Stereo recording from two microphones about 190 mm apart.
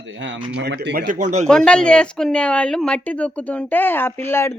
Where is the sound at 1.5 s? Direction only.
5° left (ahead or behind).